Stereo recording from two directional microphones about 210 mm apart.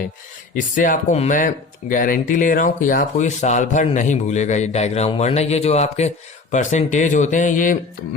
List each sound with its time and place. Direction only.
0.5 s speech: 40° left (ahead or behind)